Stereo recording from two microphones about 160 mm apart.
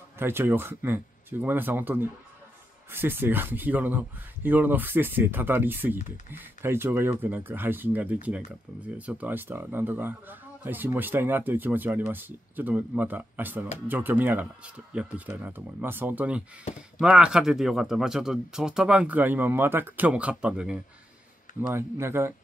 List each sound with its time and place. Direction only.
0.2 s a man's voice: 15° right (ahead or behind)